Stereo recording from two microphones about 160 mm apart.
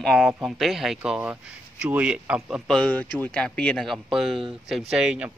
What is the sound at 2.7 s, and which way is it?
Speech, 5° left (ahead or behind).